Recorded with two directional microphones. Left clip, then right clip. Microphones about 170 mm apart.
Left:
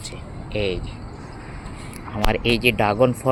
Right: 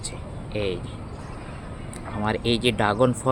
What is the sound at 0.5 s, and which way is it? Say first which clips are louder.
Speech: left 3 dB; 25° left (ahead or behind).